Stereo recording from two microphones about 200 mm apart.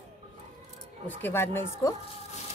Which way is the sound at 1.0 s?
10° left (ahead or behind).